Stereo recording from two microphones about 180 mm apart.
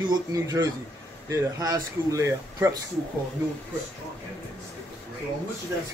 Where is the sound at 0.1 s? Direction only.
20° right (ahead or behind).